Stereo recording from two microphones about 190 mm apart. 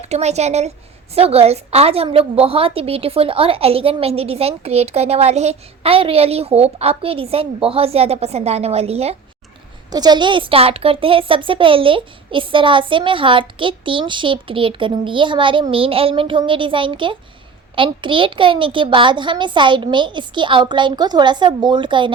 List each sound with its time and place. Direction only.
0.0 s a woman's voice: 35° right (ahead or behind)
9.9 s a child's voice: 20° right (ahead or behind)